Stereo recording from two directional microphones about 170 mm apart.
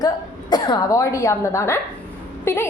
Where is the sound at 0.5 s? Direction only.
20° left (ahead or behind).